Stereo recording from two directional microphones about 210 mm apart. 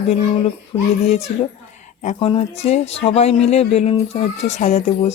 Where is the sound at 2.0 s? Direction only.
30° left (ahead or behind).